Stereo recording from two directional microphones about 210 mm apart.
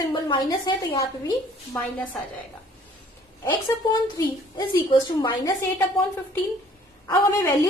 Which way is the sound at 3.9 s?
20° left (ahead or behind).